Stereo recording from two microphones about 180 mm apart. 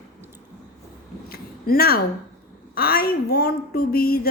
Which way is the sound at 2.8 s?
55° left (ahead or behind).